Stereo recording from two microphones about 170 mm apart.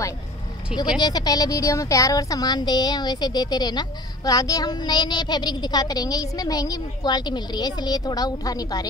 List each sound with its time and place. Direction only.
0.9 s speech: 25° left (ahead or behind)